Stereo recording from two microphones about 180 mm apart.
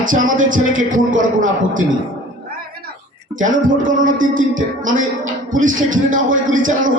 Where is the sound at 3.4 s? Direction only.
45° right (ahead or behind).